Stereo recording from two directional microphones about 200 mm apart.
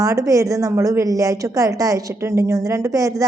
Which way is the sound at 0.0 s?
15° right (ahead or behind).